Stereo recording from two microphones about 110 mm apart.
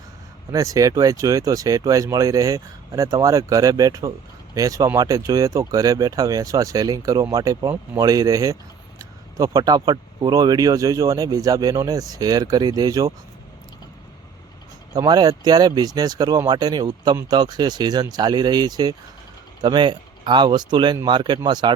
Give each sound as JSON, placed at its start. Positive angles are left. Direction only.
{"t": 0.5, "sound": "speech", "side_deg": -30}
{"t": 14.9, "sound": "speech", "side_deg": -35}